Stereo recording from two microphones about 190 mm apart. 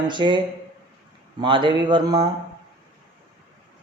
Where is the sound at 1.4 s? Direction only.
25° right (ahead or behind).